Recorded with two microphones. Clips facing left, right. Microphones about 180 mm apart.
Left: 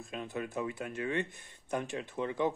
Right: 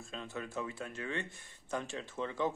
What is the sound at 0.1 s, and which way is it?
Speech, 15° left (ahead or behind).